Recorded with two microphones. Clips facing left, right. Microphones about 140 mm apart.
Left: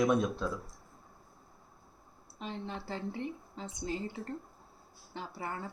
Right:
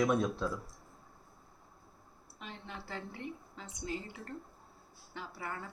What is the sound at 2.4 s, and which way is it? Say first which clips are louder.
A woman's voice: left 7 dB; 30° left (ahead or behind).